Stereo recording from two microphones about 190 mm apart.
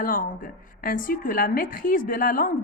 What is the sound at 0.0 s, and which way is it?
A woman's voice, 45° left (ahead or behind).